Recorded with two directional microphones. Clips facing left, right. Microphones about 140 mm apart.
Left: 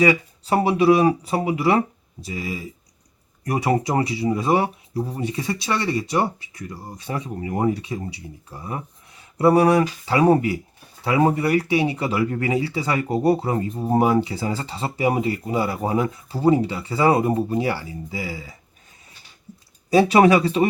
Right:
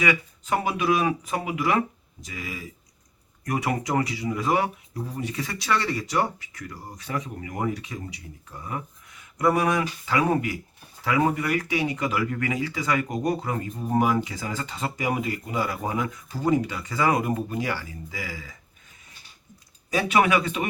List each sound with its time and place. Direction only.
0.0 s speech: 35° left (ahead or behind)
19.9 s speech: 35° left (ahead or behind)